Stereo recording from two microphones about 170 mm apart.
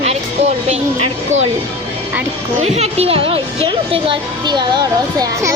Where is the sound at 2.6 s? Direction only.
40° right (ahead or behind).